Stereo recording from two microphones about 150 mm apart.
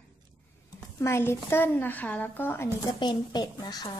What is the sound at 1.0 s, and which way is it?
Speech, 15° left (ahead or behind).